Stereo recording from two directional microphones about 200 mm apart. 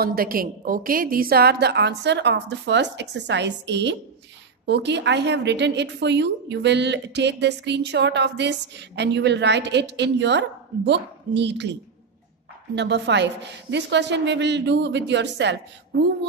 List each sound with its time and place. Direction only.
0.0 s a woman's voice: 45° right (ahead or behind)